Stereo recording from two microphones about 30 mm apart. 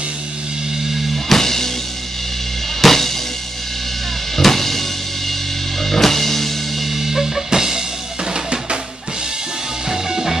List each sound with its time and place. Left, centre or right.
1.1 s music: centre
2.8 s drum kit: centre
4.4 s drum kit: centre
5.8 s music: centre
6.9 s music: centre
8.3 s drum kit: right
9.8 s music: centre